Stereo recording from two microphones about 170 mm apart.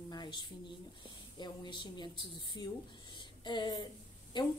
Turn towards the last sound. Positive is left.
turn(degrees=25)  # may be behind; listen again after turning